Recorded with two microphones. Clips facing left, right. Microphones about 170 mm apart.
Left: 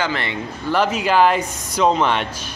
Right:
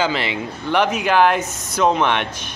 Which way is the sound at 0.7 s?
5° left (ahead or behind).